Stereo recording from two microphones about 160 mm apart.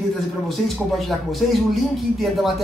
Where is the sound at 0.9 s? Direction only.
Centre (ahead or behind).